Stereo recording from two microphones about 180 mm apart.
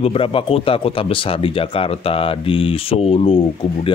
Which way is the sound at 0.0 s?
30° left (ahead or behind).